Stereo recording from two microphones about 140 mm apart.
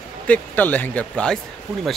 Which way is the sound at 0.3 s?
10° left (ahead or behind).